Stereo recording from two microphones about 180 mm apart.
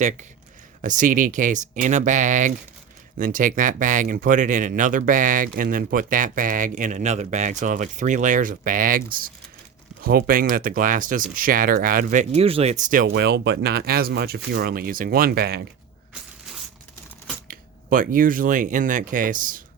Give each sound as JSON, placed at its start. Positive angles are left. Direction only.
{"t": 0.8, "sound": "speech", "side_deg": -45}
{"t": 13.1, "sound": "speech", "side_deg": -65}
{"t": 17.5, "sound": "speech", "side_deg": -50}